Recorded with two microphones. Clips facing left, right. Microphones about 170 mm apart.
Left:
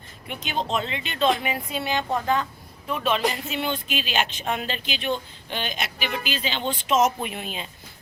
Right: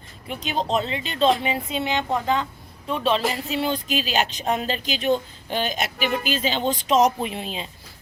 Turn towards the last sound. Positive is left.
turn(degrees=-30)  # may be behind; listen again after turning